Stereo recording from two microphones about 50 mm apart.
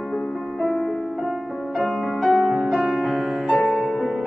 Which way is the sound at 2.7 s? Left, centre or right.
Centre.